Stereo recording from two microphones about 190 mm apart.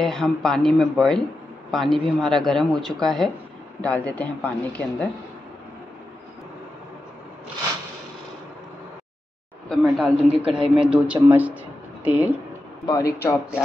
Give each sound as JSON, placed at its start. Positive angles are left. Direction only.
{"t": 0.0, "sound": "speech", "side_deg": 0}
{"t": 9.7, "sound": "a man's voice", "side_deg": 0}
{"t": 12.8, "sound": "speech", "side_deg": 20}